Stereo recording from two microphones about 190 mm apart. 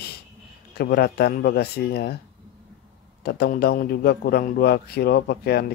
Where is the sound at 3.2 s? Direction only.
55° left (ahead or behind).